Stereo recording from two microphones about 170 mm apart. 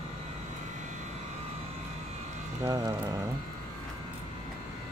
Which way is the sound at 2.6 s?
20° right (ahead or behind).